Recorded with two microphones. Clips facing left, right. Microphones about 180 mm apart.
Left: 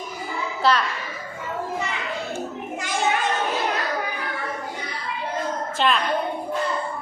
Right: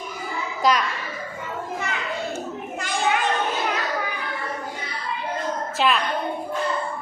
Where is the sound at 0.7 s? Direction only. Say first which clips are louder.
Even; 10° right (ahead or behind).